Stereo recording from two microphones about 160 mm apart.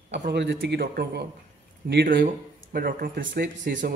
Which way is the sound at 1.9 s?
75° right (ahead or behind).